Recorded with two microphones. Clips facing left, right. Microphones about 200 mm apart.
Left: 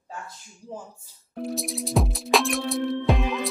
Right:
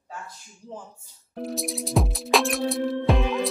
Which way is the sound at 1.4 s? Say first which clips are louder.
Even; centre (ahead or behind).